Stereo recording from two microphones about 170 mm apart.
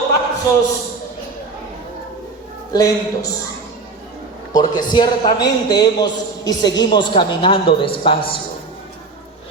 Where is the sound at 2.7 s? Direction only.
20° left (ahead or behind).